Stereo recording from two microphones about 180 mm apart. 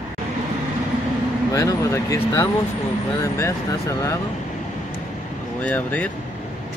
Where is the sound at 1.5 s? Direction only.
20° left (ahead or behind).